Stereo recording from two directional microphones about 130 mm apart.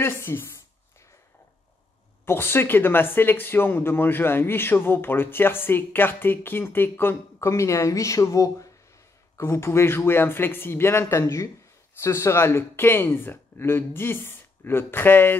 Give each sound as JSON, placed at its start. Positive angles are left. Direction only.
{"t": 0.0, "sound": "a man's voice", "side_deg": 20}
{"t": 2.2, "sound": "a man's voice", "side_deg": 15}